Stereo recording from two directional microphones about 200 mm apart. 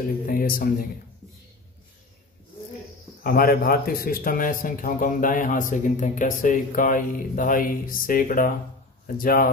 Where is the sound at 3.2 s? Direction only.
45° left (ahead or behind).